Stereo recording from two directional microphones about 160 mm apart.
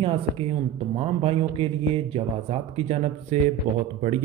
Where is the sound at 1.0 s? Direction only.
35° right (ahead or behind).